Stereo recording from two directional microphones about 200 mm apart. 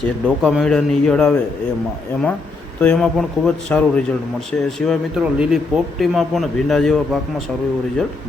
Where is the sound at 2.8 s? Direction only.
5° left (ahead or behind).